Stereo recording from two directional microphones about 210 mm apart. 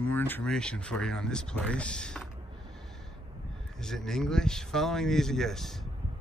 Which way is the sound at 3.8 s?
Centre (ahead or behind).